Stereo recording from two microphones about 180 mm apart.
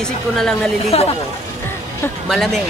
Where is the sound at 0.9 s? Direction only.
35° left (ahead or behind).